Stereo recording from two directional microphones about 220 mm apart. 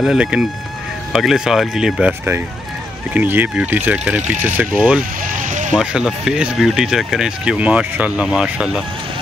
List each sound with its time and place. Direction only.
0.0 s speech: 5° right (ahead or behind)
5.2 s a sound: 40° right (ahead or behind)
5.8 s speech: 5° right (ahead or behind)